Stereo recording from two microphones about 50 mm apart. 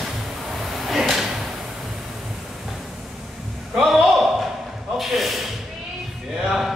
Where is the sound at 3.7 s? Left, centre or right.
Centre.